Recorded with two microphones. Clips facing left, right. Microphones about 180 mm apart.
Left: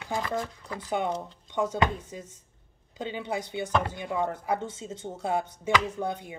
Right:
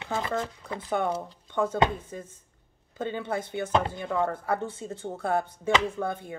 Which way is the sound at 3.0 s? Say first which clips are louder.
Right 2 dB; 15° left (ahead or behind).